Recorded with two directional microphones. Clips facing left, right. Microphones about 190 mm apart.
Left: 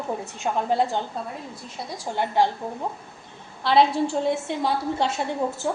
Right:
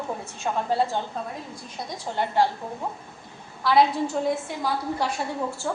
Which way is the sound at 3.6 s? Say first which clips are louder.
Left 1 dB; 25° left (ahead or behind).